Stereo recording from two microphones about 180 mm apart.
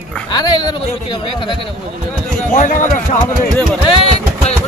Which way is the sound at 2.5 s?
40° left (ahead or behind).